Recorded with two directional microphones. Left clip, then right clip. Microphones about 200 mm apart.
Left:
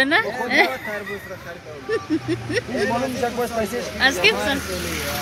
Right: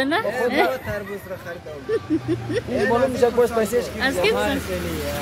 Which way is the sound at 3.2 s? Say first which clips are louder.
Right 5 dB; 35° right (ahead or behind).